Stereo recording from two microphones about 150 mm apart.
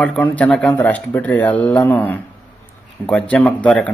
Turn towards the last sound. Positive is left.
turn(degrees=10)  # may be behind; listen again after turning